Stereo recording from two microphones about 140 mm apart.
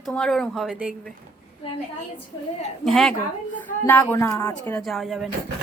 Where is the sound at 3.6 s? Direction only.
15° left (ahead or behind).